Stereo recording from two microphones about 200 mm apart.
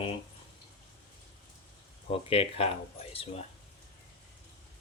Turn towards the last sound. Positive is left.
turn(degrees=30)  # may be behind; listen again after turning